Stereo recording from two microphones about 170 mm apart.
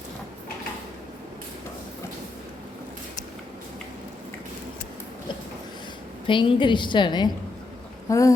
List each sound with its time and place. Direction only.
6.2 s a woman's voice: 30° left (ahead or behind)